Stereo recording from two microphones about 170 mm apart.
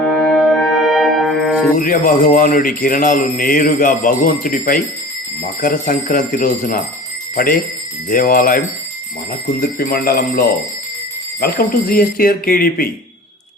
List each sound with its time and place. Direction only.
0.1 s music: 5° left (ahead or behind)
1.7 s speech: 55° left (ahead or behind)